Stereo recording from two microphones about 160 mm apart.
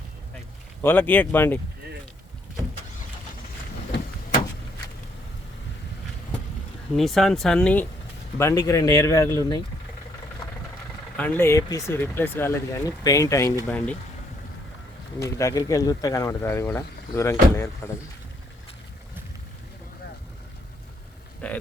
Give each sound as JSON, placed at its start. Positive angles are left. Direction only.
{"t": 0.8, "sound": "speech", "side_deg": 10}
{"t": 6.9, "sound": "speech", "side_deg": 0}
{"t": 11.2, "sound": "speech", "side_deg": 15}
{"t": 13.7, "sound": "speech", "side_deg": 10}
{"t": 15.2, "sound": "speech", "side_deg": 20}
{"t": 21.4, "sound": "a sound", "side_deg": 10}